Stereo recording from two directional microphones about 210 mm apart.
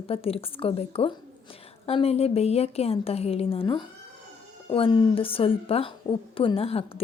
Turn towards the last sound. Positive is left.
turn(degrees=30)  # may be behind; listen again after turning